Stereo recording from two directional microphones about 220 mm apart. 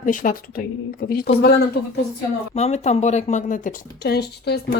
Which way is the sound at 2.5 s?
30° left (ahead or behind).